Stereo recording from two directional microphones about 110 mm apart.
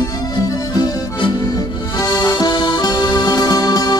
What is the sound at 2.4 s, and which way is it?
Music, 40° left (ahead or behind).